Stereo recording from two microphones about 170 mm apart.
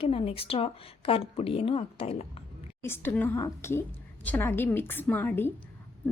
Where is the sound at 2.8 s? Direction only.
15° left (ahead or behind).